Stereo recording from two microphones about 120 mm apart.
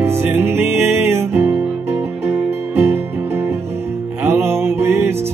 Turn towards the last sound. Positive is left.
turn(degrees=-20)  # may be behind; listen again after turning